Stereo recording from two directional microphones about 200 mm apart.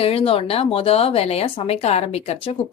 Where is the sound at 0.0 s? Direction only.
30° left (ahead or behind).